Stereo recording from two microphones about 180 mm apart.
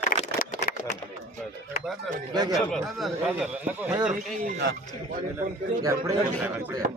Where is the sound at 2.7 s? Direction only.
5° right (ahead or behind).